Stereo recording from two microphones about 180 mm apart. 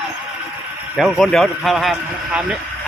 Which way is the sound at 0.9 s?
Centre (ahead or behind).